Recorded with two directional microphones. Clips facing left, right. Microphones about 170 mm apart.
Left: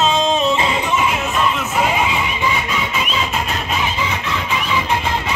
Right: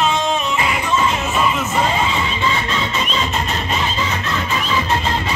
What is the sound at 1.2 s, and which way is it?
Music, centre (ahead or behind).